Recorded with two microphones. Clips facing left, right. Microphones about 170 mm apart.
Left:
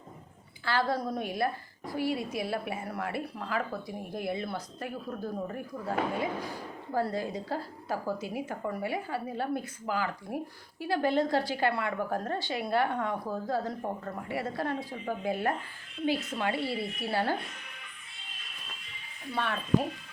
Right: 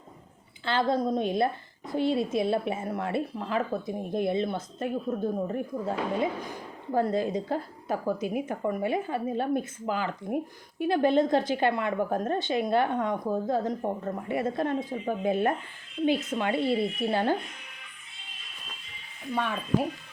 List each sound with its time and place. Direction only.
0.6 s a woman's voice: 20° right (ahead or behind)
19.3 s a woman's voice: 15° right (ahead or behind)